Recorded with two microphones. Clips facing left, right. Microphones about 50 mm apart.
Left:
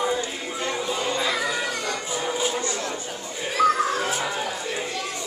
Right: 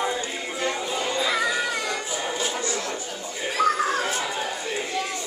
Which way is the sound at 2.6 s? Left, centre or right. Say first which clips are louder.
Even; left.